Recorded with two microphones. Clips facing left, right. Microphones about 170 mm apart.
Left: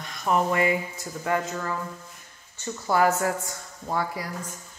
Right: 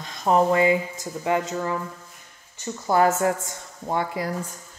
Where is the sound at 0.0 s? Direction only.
25° right (ahead or behind).